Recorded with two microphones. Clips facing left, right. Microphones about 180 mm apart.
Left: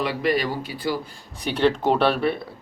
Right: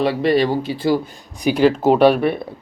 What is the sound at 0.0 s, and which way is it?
Speech, 25° right (ahead or behind).